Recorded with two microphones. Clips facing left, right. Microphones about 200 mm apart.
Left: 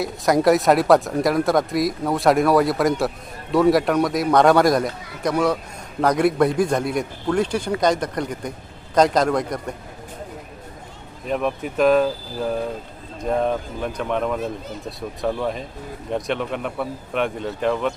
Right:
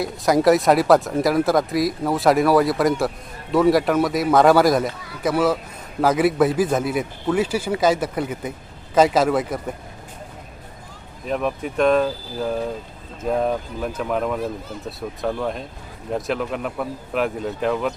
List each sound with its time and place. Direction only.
0.0 s speech: centre (ahead or behind)
11.3 s speech: centre (ahead or behind)